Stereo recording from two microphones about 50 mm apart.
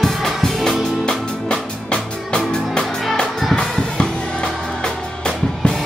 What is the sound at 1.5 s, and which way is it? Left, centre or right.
Music, centre.